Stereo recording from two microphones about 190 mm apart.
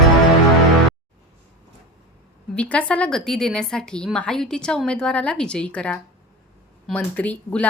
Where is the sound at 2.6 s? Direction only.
5° left (ahead or behind).